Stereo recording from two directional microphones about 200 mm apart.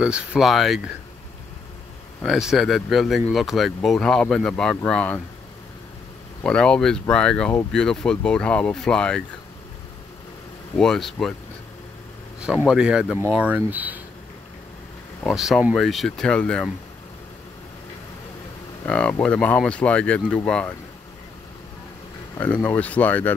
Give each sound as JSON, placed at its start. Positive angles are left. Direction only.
{"t": 0.0, "sound": "speech", "side_deg": -5}
{"t": 2.2, "sound": "speech", "side_deg": 0}
{"t": 6.4, "sound": "speech", "side_deg": 5}
{"t": 10.8, "sound": "speech", "side_deg": 0}
{"t": 12.6, "sound": "speech", "side_deg": -5}
{"t": 15.2, "sound": "speech", "side_deg": 0}
{"t": 18.9, "sound": "speech", "side_deg": 5}
{"t": 22.4, "sound": "speech", "side_deg": 10}